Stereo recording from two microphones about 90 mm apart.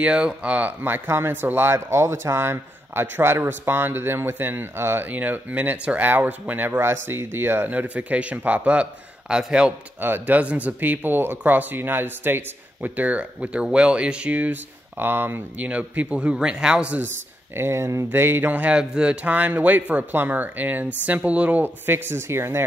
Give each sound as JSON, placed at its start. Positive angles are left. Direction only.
{"t": 0.0, "sound": "speech", "side_deg": -10}
{"t": 9.9, "sound": "speech", "side_deg": -20}
{"t": 17.6, "sound": "speech", "side_deg": -30}